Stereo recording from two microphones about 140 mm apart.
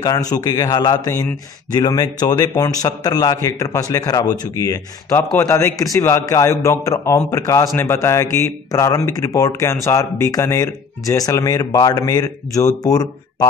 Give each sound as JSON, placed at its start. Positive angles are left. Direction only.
{"t": 0.0, "sound": "a man's voice", "side_deg": 25}